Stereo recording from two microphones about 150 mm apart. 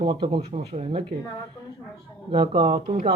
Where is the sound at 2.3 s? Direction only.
35° right (ahead or behind).